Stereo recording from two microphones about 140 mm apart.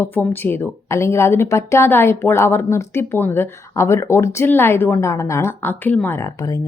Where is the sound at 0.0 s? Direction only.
15° left (ahead or behind).